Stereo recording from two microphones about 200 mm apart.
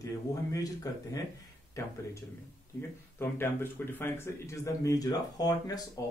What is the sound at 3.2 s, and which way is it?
Speech, 10° left (ahead or behind).